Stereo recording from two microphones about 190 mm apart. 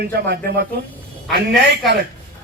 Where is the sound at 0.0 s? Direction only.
55° right (ahead or behind).